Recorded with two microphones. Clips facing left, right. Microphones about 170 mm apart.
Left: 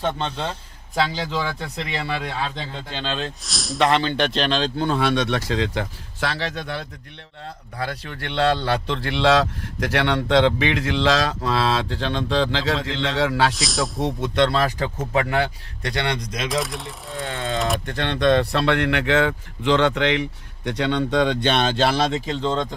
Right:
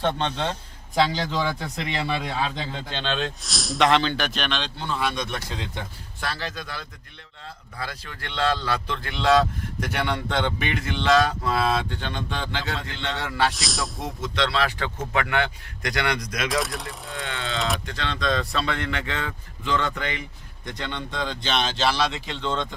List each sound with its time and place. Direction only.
0.0 s a man's voice: 5° left (ahead or behind)
2.1 s a man's voice: 10° right (ahead or behind)
2.7 s speech: 5° left (ahead or behind)
4.2 s speech: 30° left (ahead or behind)
4.8 s a man's voice: 60° left (ahead or behind); by 13.5 s 90° left
13.5 s speech: centre (ahead or behind)
14.0 s speech: 55° left (ahead or behind); by 16.5 s 25° left (ahead or behind)
16.5 s speech: centre (ahead or behind)
17.2 s ratchet: 40° left (ahead or behind)
17.8 s speech: 55° left (ahead or behind); by 22.7 s 35° left (ahead or behind)